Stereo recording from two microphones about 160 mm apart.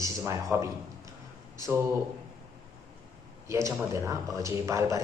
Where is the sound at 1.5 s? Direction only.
20° right (ahead or behind).